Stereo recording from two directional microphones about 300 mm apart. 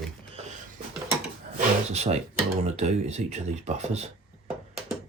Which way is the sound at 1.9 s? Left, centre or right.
Right.